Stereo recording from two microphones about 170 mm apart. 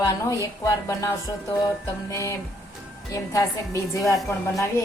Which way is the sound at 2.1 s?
20° left (ahead or behind).